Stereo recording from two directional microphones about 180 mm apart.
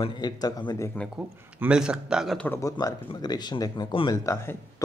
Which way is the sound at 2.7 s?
25° left (ahead or behind).